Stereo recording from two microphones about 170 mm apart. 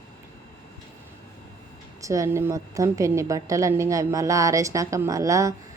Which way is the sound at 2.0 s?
20° right (ahead or behind).